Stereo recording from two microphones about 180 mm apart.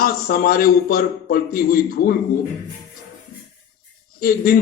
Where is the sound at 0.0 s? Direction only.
55° left (ahead or behind).